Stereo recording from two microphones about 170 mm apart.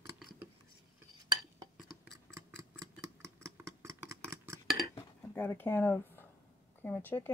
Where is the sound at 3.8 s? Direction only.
15° right (ahead or behind).